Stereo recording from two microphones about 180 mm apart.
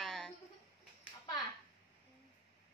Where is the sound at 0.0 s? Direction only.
Centre (ahead or behind).